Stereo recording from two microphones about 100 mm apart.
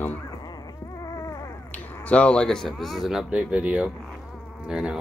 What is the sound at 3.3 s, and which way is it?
Speech, 10° right (ahead or behind).